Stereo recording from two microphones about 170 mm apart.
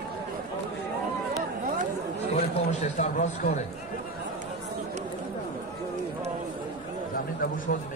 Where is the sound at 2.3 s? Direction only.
40° left (ahead or behind).